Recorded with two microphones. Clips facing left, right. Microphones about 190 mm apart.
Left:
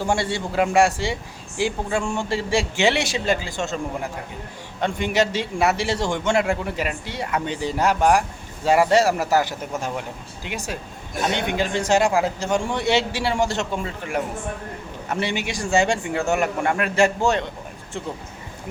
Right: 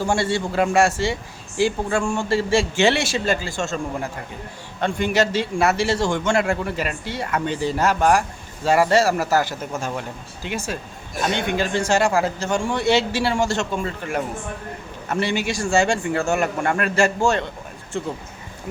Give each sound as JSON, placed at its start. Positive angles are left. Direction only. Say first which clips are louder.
{"t": 0.1, "sound": "a man's voice", "louder": "right 1 dB", "side_deg": 15}
{"t": 4.8, "sound": "a man's voice", "louder": "right 1 dB", "side_deg": 15}